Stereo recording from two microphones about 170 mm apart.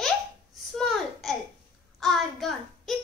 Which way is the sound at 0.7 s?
Centre (ahead or behind).